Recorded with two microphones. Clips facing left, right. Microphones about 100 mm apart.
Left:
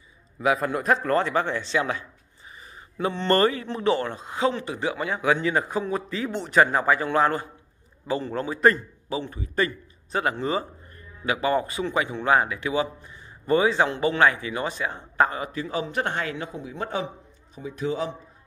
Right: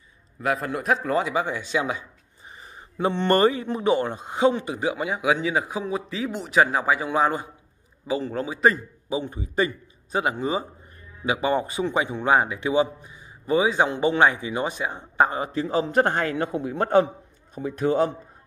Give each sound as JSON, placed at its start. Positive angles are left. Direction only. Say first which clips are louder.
{"t": 0.4, "sound": "speech", "louder": "left 2 dB", "side_deg": 0}
{"t": 2.5, "sound": "a man's voice", "louder": "right 1 dB", "side_deg": -30}
{"t": 9.1, "sound": "a man's voice", "louder": "right 2 dB", "side_deg": -20}
{"t": 15.3, "sound": "a man's voice", "louder": "right 4 dB", "side_deg": -30}
{"t": 16.4, "sound": "a man's voice", "louder": "right 7 dB", "side_deg": -60}